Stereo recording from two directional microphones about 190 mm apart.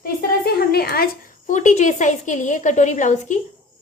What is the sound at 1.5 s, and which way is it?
A woman's voice, 40° left (ahead or behind).